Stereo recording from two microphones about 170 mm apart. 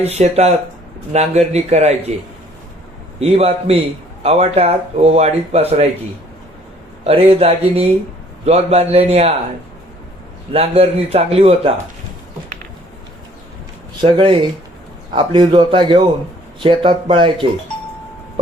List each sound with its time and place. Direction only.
0.0 s speech: 40° right (ahead or behind)
3.2 s speech: 35° right (ahead or behind)
7.0 s speech: 35° right (ahead or behind)
10.5 s speech: 35° right (ahead or behind)
14.0 s a man's voice: 30° right (ahead or behind)